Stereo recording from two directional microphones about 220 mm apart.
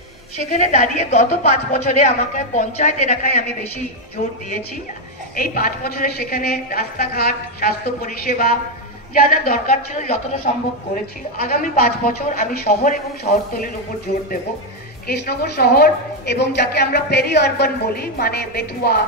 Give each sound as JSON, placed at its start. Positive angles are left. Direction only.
{"t": 0.4, "sound": "a woman's voice", "side_deg": 35}
{"t": 5.3, "sound": "a woman's voice", "side_deg": 40}